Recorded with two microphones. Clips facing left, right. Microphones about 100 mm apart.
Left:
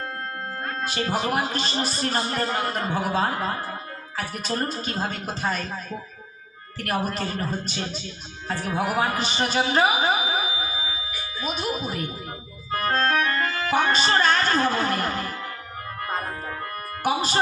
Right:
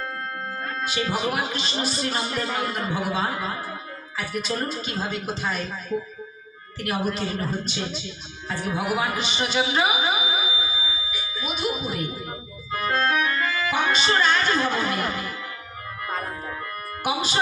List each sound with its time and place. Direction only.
0.6 s a man's voice: 40° left (ahead or behind)
12.7 s music: 45° left (ahead or behind)
17.0 s speech: 45° left (ahead or behind)